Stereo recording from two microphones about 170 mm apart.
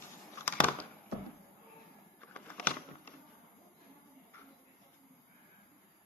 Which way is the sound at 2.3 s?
10° left (ahead or behind).